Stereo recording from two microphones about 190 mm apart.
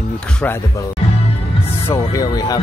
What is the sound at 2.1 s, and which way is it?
Speech, 20° left (ahead or behind).